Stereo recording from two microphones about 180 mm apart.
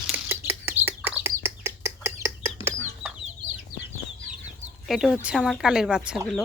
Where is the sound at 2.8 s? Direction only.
5° right (ahead or behind).